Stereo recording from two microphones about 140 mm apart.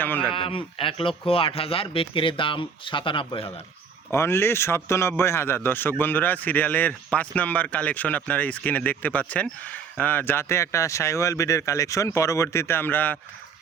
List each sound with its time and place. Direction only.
0.0 s a man's voice: 15° left (ahead or behind)
0.3 s speech: 40° left (ahead or behind)
4.1 s a man's voice: 20° left (ahead or behind)